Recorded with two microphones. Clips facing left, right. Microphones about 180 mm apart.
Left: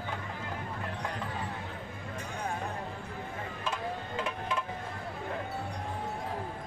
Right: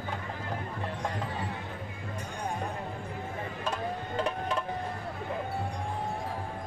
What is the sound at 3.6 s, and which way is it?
Music, 40° right (ahead or behind).